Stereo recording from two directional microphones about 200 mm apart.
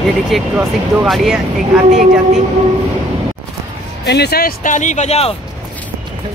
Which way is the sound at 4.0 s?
55° left (ahead or behind).